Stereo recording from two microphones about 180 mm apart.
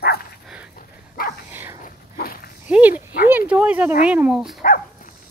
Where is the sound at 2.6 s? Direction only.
10° right (ahead or behind).